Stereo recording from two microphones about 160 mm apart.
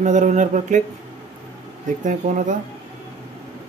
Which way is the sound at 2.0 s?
50° right (ahead or behind).